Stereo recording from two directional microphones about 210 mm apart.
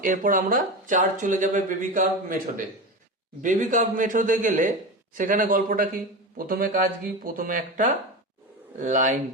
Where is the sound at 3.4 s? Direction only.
35° right (ahead or behind).